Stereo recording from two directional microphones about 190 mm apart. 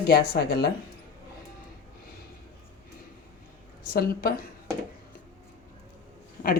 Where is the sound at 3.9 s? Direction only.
55° left (ahead or behind).